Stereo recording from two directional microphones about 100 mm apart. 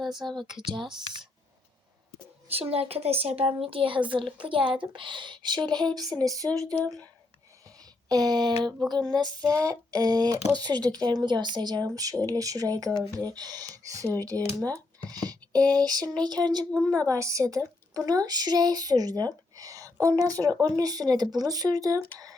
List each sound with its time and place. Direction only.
0.1 s speech: 50° right (ahead or behind)
2.5 s speech: 75° right (ahead or behind); by 6.7 s 35° right (ahead or behind)
8.1 s speech: 45° right (ahead or behind)
16.9 s speech: 35° right (ahead or behind)